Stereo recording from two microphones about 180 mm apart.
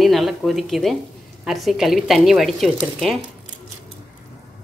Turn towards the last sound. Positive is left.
turn(degrees=0)  # may be behind; listen again after turning